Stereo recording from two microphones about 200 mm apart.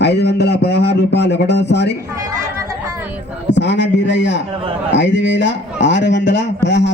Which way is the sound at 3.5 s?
60° left (ahead or behind).